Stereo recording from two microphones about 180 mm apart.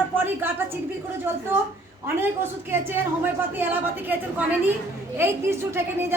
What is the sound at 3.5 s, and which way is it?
A woman's voice, 10° right (ahead or behind).